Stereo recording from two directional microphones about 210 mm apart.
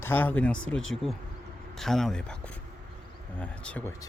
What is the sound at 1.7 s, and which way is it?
Speech, centre (ahead or behind).